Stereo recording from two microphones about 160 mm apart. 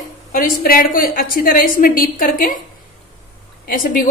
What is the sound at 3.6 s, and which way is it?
Speech, 60° left (ahead or behind).